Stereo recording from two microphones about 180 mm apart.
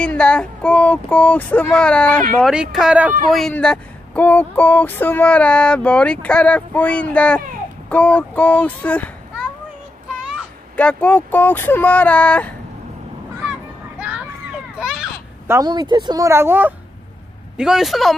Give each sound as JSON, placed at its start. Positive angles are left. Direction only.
{"t": 0.0, "sound": "speech", "side_deg": 5}
{"t": 10.8, "sound": "speech", "side_deg": 5}
{"t": 14.8, "sound": "a sound", "side_deg": -5}
{"t": 15.4, "sound": "speech", "side_deg": -20}